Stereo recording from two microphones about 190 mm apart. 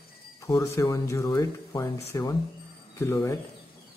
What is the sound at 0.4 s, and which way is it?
Speech, 15° left (ahead or behind).